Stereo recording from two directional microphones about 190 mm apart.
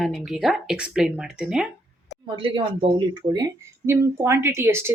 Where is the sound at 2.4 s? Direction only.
25° right (ahead or behind).